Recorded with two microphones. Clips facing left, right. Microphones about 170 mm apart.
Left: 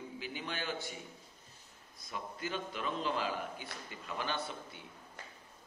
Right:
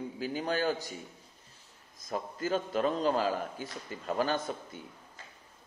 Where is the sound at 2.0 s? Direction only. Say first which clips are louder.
Right 7 dB; 40° right (ahead or behind).